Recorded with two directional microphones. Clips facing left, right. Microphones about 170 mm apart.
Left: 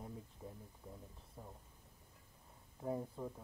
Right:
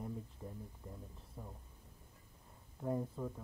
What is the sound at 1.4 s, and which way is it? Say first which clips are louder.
Speech: right 3 dB; centre (ahead or behind).